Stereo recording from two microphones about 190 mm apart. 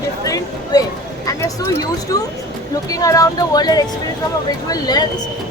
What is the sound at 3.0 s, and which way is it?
A woman's voice, 20° left (ahead or behind).